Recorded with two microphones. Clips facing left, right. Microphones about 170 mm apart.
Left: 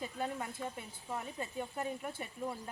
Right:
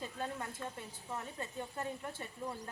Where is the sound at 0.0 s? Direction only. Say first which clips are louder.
Left 2 dB; 15° left (ahead or behind).